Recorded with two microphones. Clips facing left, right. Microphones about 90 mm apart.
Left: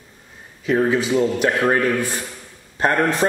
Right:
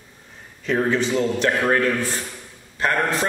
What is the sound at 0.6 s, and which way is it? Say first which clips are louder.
Speech: left 2 dB; 5° left (ahead or behind).